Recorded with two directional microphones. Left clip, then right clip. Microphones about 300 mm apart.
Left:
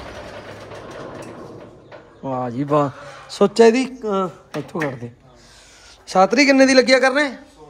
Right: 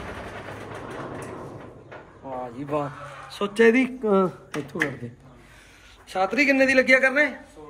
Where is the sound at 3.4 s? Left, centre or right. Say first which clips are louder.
Left 5 dB; centre.